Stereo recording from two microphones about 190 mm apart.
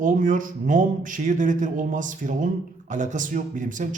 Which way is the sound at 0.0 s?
45° right (ahead or behind).